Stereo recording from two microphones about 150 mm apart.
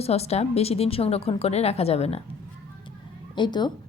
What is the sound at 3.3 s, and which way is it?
Speech, 30° left (ahead or behind).